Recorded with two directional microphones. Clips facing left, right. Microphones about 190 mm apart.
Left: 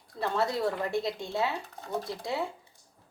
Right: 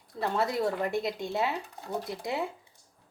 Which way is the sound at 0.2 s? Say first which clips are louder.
Even; 20° right (ahead or behind).